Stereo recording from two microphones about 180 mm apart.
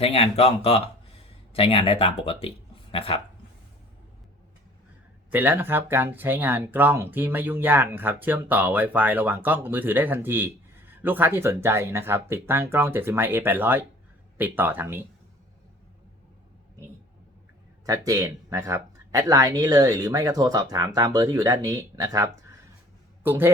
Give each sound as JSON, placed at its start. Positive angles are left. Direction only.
{"t": 0.0, "sound": "speech", "side_deg": 35}
{"t": 5.3, "sound": "speech", "side_deg": -10}
{"t": 17.8, "sound": "a man's voice", "side_deg": -20}